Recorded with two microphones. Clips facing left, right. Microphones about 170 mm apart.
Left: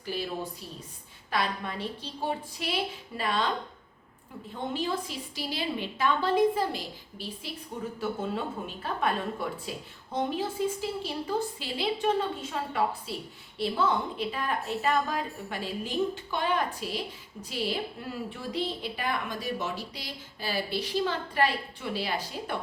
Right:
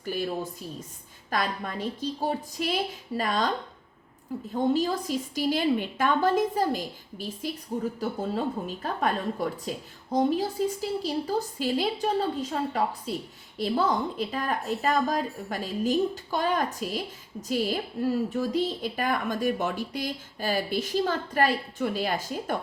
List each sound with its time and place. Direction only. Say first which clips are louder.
0.0 s a woman's voice: right 3 dB; 50° right (ahead or behind)
1.3 s a woman's voice: right 1 dB; 45° right (ahead or behind)
4.5 s a woman's voice: right 6 dB; 40° right (ahead or behind)